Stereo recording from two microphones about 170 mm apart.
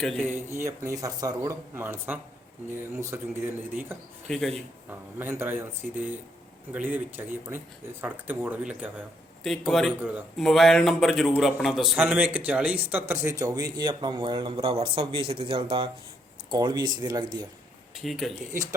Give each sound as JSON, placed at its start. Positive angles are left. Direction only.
{"t": 0.0, "sound": "a man's voice", "side_deg": 5}
{"t": 0.3, "sound": "speech", "side_deg": -15}
{"t": 4.3, "sound": "a man's voice", "side_deg": 0}
{"t": 4.9, "sound": "speech", "side_deg": -15}
{"t": 9.4, "sound": "a man's voice", "side_deg": 0}
{"t": 17.9, "sound": "a man's voice", "side_deg": 0}